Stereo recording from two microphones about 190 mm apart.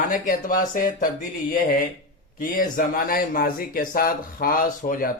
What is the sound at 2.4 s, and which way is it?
Speech, 45° left (ahead or behind).